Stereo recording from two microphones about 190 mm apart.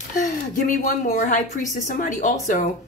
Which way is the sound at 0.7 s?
45° left (ahead or behind).